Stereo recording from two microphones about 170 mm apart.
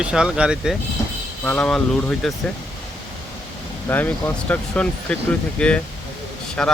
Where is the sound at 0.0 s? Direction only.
5° right (ahead or behind).